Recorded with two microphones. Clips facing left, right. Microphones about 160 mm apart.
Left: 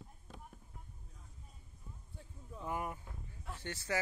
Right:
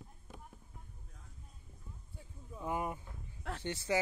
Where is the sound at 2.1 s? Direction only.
5° right (ahead or behind).